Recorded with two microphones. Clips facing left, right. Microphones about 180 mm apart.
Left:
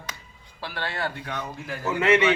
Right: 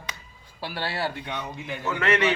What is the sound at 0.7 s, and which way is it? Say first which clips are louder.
Speech: right 1 dB; 10° right (ahead or behind).